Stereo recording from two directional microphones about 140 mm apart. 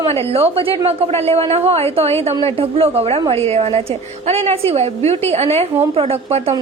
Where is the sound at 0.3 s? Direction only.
45° right (ahead or behind).